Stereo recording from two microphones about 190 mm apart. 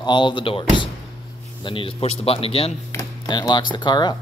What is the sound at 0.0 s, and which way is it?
A man's voice, 25° left (ahead or behind).